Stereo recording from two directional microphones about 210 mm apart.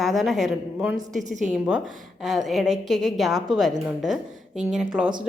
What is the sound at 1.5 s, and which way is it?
A woman's voice, 5° right (ahead or behind).